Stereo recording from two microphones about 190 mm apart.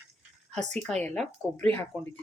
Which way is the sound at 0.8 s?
5° left (ahead or behind).